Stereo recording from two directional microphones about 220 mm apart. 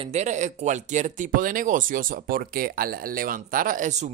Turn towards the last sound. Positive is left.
turn(degrees=-30)  # may be behind; listen again after turning